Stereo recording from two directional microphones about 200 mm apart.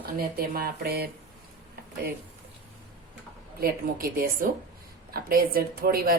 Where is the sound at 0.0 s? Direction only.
50° right (ahead or behind).